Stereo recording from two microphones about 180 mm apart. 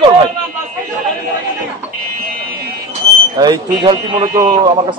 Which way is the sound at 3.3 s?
25° right (ahead or behind).